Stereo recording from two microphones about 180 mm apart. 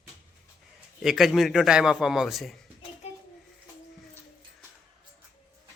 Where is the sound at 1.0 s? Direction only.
Centre (ahead or behind).